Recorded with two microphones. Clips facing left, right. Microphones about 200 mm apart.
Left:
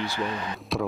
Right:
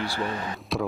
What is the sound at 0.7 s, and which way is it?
Speech, centre (ahead or behind).